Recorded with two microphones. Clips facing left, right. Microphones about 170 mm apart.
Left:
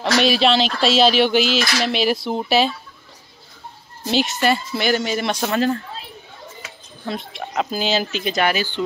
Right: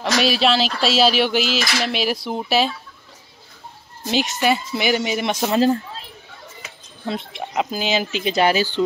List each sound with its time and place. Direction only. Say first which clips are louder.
0.0 s speech: left 2 dB; centre (ahead or behind)
4.0 s speech: left 1 dB; 10° right (ahead or behind)
5.5 s speech: right 4 dB; 25° right (ahead or behind)
7.1 s speech: right 1 dB; 20° right (ahead or behind)
8.4 s speech: right 3 dB; 35° right (ahead or behind)